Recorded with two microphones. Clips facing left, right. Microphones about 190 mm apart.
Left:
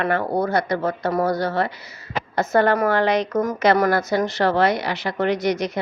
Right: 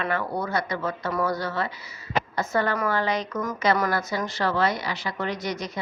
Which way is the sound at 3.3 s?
35° left (ahead or behind).